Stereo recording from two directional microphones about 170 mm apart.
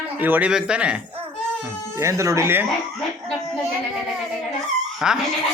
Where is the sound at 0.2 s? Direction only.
10° right (ahead or behind).